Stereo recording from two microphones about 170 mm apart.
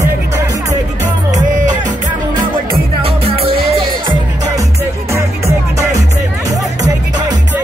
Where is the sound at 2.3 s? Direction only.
55° right (ahead or behind).